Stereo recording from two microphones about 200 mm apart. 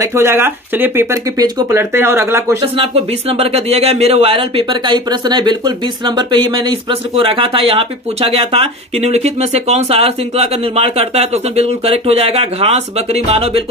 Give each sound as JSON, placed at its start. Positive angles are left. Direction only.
{"t": 0.0, "sound": "speech", "side_deg": -10}
{"t": 2.6, "sound": "speech", "side_deg": -30}